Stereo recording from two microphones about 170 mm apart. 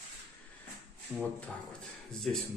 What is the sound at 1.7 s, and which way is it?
Speech, 5° left (ahead or behind).